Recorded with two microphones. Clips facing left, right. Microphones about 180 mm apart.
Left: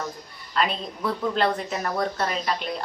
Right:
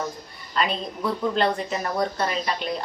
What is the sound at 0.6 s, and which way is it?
Speech, centre (ahead or behind).